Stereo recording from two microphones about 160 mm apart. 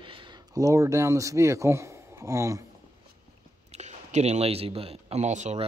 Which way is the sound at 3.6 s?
45° right (ahead or behind).